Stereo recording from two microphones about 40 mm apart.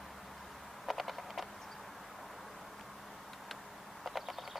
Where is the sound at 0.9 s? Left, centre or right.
Centre.